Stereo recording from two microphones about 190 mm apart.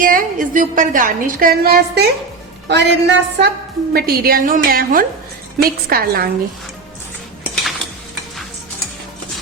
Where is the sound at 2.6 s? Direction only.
65° right (ahead or behind).